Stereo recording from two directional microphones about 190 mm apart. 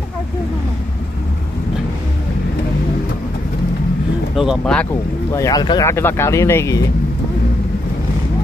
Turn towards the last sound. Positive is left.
turn(degrees=15)  # may be behind; listen again after turning